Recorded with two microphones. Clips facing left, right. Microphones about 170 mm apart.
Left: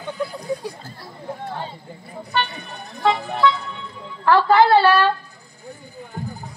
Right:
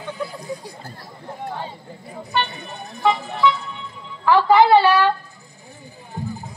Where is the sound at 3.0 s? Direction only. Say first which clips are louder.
Even; 15° right (ahead or behind).